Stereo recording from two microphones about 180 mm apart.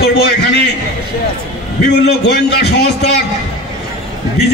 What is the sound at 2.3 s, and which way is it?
Speech, 65° left (ahead or behind).